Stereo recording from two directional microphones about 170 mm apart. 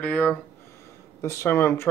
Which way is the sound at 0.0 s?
5° left (ahead or behind).